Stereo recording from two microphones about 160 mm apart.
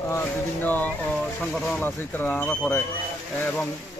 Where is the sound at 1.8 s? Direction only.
10° left (ahead or behind).